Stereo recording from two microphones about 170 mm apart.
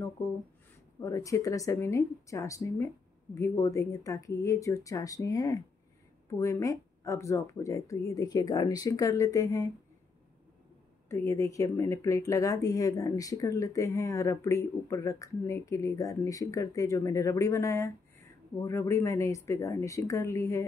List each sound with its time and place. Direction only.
0.2 s speech: 15° left (ahead or behind)
11.1 s speech: 15° left (ahead or behind)